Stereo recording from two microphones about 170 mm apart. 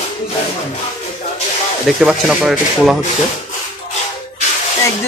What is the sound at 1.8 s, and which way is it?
Speech, centre (ahead or behind).